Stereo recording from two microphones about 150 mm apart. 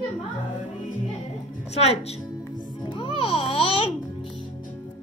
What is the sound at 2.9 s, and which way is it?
Music, 35° left (ahead or behind).